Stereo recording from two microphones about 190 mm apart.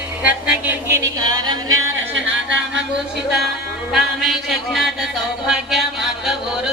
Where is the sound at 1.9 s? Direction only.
75° right (ahead or behind).